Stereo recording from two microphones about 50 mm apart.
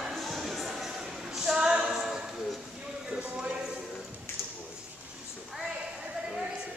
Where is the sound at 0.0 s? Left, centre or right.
Centre.